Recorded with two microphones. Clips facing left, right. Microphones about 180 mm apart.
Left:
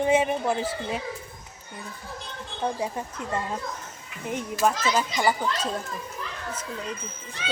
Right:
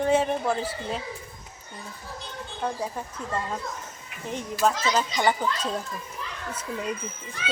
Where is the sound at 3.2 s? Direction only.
80° left.